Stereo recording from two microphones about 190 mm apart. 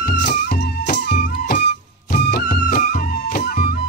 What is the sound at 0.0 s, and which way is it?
Music, 60° left (ahead or behind).